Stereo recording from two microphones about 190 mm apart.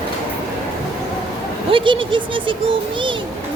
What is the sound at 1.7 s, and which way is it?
Speech, 25° right (ahead or behind).